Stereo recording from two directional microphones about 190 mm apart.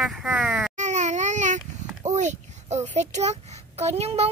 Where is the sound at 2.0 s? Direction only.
40° right (ahead or behind).